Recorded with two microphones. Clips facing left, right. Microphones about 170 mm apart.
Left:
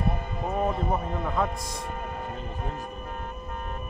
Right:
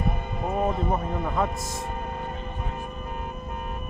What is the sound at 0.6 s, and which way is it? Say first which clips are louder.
Speech: right 1 dB; centre (ahead or behind).